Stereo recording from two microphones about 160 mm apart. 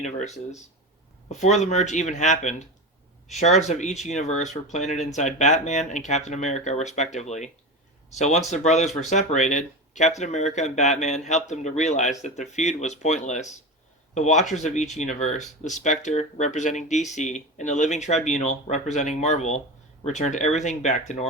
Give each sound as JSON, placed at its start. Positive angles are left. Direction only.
{"t": 0.0, "sound": "speech", "side_deg": 50}